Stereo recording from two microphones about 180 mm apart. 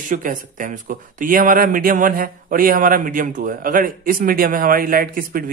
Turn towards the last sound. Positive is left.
turn(degrees=-50)  # may be behind; listen again after turning